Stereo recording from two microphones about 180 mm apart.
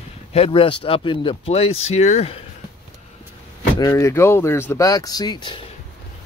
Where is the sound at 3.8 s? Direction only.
15° left (ahead or behind).